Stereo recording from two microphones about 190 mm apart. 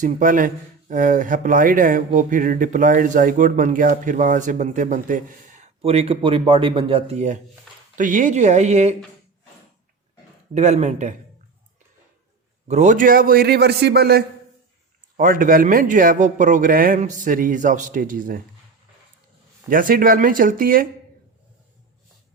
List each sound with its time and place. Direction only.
0.0 s speech: 45° right (ahead or behind)
10.5 s speech: 35° right (ahead or behind)
12.6 s speech: 40° right (ahead or behind)
19.7 s speech: 45° right (ahead or behind)